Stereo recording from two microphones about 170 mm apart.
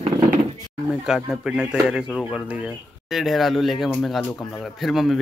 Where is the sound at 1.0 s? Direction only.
5° right (ahead or behind).